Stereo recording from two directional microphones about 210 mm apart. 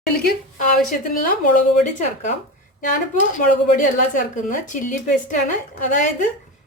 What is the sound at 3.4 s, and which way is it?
A woman's voice, 40° left (ahead or behind).